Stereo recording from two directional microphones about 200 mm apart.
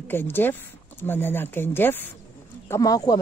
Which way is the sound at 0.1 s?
10° left (ahead or behind).